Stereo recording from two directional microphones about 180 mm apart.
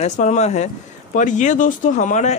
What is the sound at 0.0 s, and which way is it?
Speech, 40° left (ahead or behind).